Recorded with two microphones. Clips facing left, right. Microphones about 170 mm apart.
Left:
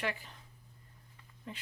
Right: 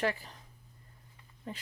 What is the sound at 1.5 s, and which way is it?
Speech, 40° right (ahead or behind).